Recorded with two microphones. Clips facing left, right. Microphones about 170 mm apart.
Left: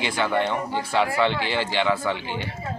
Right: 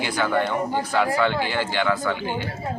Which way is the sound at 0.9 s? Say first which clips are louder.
Even; 5° right (ahead or behind).